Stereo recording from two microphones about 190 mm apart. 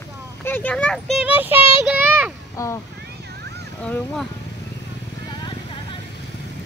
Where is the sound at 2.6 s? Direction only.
15° left (ahead or behind).